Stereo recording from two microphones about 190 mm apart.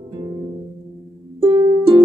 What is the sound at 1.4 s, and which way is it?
Music, 25° right (ahead or behind).